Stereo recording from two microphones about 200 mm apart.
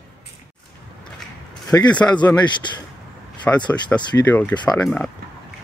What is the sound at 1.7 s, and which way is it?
Speech, 10° left (ahead or behind).